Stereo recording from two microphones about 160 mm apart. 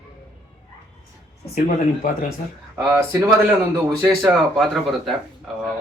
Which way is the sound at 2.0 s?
60° left (ahead or behind).